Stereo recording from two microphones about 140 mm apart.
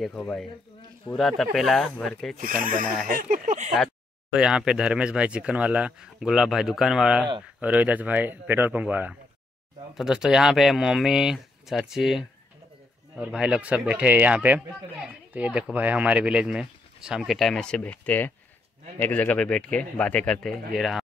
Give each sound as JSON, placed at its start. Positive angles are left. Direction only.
{"t": 0.0, "sound": "speech", "side_deg": 5}
{"t": 2.6, "sound": "a sound", "side_deg": -85}
{"t": 3.1, "sound": "speech", "side_deg": -80}
{"t": 3.7, "sound": "speech", "side_deg": -5}